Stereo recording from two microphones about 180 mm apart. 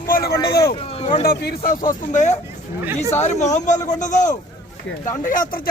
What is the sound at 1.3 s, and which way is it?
Speech, 60° left (ahead or behind).